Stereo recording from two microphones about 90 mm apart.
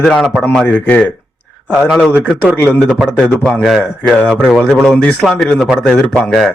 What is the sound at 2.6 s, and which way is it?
Speech, 20° left (ahead or behind).